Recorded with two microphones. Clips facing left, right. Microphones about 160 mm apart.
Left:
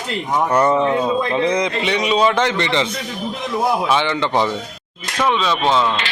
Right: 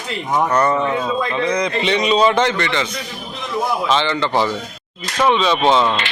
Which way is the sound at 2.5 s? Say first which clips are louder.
Left 2 dB; 30° left (ahead or behind).